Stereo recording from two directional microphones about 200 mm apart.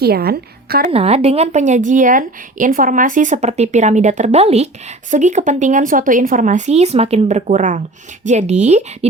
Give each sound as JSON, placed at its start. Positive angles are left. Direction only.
{"t": 0.0, "sound": "a woman's voice", "side_deg": -50}
{"t": 0.9, "sound": "speech", "side_deg": -30}